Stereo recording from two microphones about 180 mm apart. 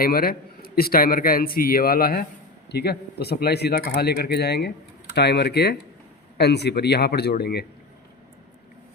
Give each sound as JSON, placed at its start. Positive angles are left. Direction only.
{"t": 0.0, "sound": "a man's voice", "side_deg": 55}